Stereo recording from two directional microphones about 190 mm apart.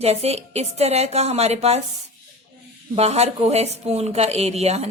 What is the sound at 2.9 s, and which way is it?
A woman's voice, 35° right (ahead or behind).